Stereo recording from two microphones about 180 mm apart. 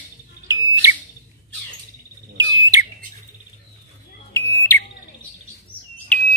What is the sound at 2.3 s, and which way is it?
Bird, 20° right (ahead or behind).